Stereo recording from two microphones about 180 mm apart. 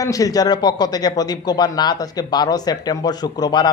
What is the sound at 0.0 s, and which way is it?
A man's voice, 20° left (ahead or behind).